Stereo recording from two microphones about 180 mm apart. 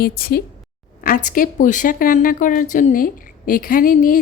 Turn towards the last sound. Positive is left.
turn(degrees=50)  # may be behind; listen again after turning